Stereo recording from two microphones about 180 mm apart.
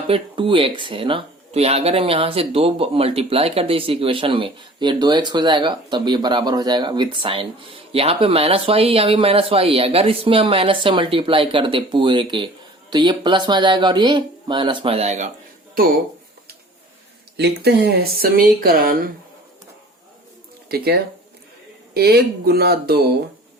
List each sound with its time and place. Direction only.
0.1 s speech: 30° right (ahead or behind)
15.7 s speech: 55° right (ahead or behind)
17.3 s speech: 65° right (ahead or behind)
20.7 s speech: 60° right (ahead or behind)